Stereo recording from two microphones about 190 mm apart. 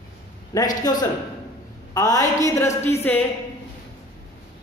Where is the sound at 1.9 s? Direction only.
20° left (ahead or behind).